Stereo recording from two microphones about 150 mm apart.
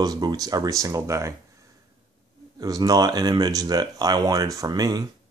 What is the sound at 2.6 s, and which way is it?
Speech, 25° right (ahead or behind).